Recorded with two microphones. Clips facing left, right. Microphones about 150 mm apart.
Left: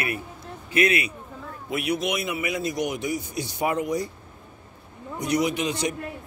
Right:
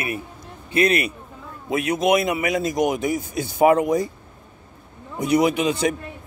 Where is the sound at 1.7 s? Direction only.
90° right.